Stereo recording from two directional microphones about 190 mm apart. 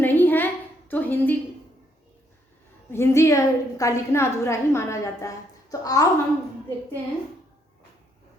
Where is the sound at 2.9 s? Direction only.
15° left (ahead or behind).